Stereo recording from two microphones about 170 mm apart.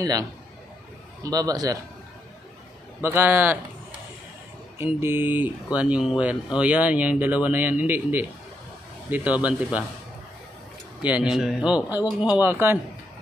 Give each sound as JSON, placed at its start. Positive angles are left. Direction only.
{"t": 1.2, "sound": "a man's voice", "side_deg": -20}
{"t": 3.0, "sound": "speech", "side_deg": -10}
{"t": 4.7, "sound": "speech", "side_deg": -15}
{"t": 11.0, "sound": "speech", "side_deg": -10}